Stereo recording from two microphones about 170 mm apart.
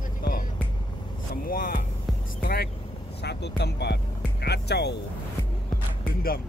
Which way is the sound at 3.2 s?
85° left.